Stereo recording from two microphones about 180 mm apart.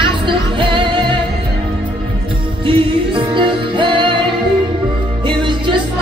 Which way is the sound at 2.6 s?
30° right (ahead or behind).